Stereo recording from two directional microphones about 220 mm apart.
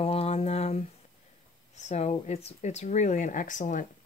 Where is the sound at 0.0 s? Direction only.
25° left (ahead or behind).